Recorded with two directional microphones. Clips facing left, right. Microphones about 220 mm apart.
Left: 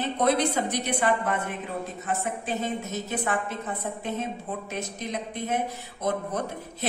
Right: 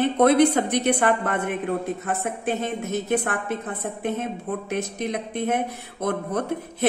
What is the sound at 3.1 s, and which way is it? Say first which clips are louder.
Speech: right 4 dB; 55° right (ahead or behind).